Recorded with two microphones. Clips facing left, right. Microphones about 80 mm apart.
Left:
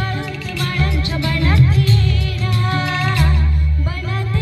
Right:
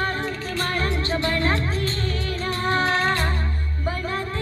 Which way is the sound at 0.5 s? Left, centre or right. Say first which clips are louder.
Left 3 dB; right.